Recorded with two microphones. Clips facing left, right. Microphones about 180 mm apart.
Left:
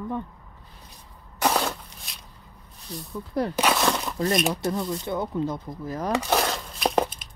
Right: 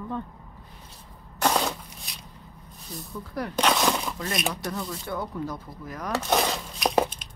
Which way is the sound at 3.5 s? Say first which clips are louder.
Right 2 dB; 5° left (ahead or behind).